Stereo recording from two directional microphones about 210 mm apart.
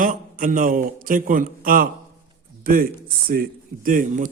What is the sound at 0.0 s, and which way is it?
A man's voice, 40° right (ahead or behind).